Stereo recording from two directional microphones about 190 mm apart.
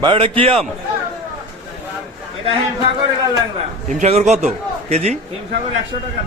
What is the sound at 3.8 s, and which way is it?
A man's voice, 40° right (ahead or behind).